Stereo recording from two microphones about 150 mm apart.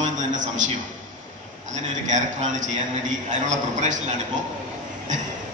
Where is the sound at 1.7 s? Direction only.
55° right (ahead or behind).